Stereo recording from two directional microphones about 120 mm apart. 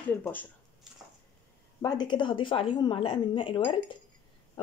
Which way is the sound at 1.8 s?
35° left (ahead or behind).